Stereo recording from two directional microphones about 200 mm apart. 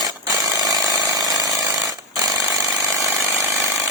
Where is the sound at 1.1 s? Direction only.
20° right (ahead or behind).